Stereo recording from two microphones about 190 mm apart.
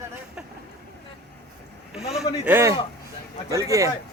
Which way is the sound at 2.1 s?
10° right (ahead or behind).